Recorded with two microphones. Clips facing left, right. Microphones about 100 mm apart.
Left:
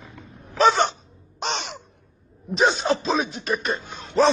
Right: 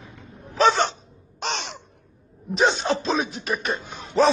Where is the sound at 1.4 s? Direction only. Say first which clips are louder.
Left 1 dB; 10° left (ahead or behind).